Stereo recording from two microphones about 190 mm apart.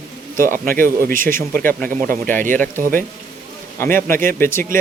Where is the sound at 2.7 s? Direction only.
45° right (ahead or behind).